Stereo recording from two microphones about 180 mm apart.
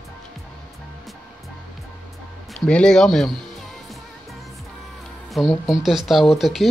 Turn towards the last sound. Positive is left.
turn(degrees=0)  # may be behind; listen again after turning